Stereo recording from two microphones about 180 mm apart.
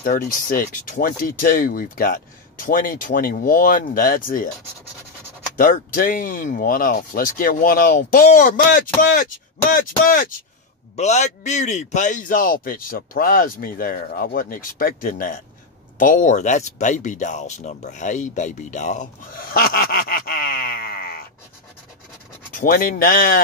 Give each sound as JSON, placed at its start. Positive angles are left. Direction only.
{"t": 0.0, "sound": "speech", "side_deg": 50}
{"t": 5.6, "sound": "speech", "side_deg": 50}
{"t": 11.0, "sound": "speech", "side_deg": 40}
{"t": 22.5, "sound": "speech", "side_deg": 50}